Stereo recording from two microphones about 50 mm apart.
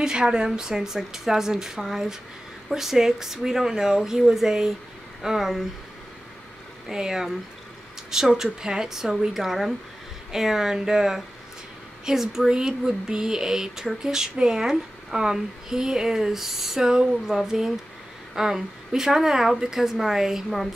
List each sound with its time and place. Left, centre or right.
0.0 s a woman's voice: centre
6.9 s a woman's voice: centre